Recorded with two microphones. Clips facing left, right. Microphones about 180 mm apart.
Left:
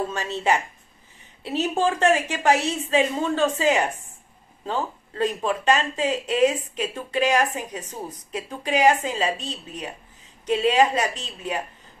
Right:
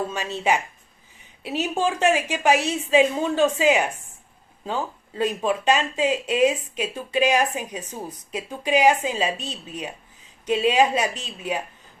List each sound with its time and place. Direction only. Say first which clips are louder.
0.1 s speech: even; 15° right (ahead or behind)
10.5 s speech: even; 15° right (ahead or behind)